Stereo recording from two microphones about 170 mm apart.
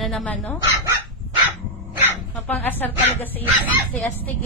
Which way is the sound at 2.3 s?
10° left (ahead or behind).